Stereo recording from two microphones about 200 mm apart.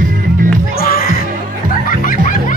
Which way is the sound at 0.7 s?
50° left (ahead or behind).